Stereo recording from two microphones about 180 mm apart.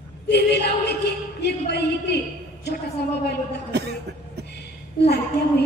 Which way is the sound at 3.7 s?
65° right (ahead or behind).